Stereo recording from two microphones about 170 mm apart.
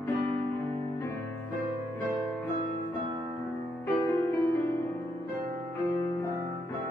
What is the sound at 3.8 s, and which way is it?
Music, 15° left (ahead or behind).